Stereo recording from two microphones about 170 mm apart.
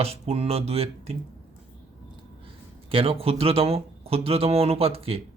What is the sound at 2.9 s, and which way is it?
Speech, 35° right (ahead or behind).